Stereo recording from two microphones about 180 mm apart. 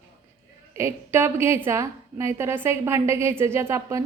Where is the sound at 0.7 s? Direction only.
15° right (ahead or behind).